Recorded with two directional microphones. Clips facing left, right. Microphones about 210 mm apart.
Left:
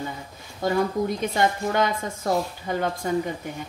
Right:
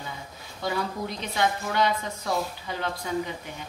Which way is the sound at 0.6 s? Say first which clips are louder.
Left 7 dB; 50° left (ahead or behind).